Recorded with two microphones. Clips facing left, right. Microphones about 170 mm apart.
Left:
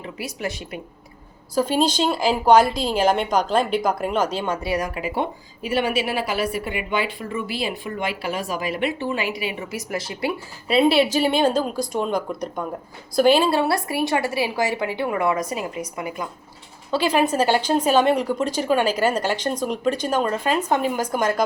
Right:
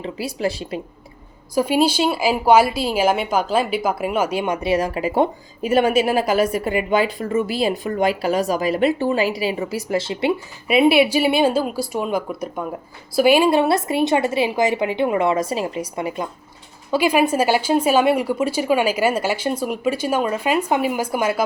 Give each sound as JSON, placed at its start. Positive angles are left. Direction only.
{"t": 0.0, "sound": "speech", "side_deg": -30}
{"t": 1.5, "sound": "a woman's voice", "side_deg": -10}
{"t": 4.9, "sound": "a woman's voice", "side_deg": -40}
{"t": 10.8, "sound": "a woman's voice", "side_deg": -10}
{"t": 16.9, "sound": "a woman's voice", "side_deg": -10}